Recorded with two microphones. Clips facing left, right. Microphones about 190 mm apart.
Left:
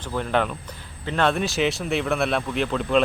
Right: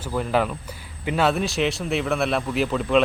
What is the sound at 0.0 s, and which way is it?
Speech, 5° right (ahead or behind).